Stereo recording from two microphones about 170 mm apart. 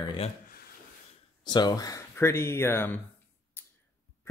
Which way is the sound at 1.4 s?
25° left (ahead or behind).